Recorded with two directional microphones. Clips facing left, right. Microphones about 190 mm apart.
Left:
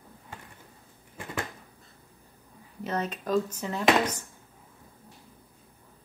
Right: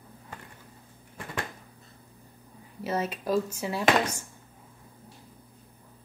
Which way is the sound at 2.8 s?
10° right (ahead or behind).